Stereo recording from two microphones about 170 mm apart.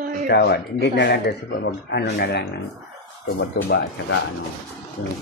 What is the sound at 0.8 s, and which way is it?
Speech, 85° left.